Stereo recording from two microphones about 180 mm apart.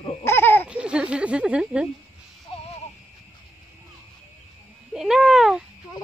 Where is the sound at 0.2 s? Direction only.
15° left (ahead or behind).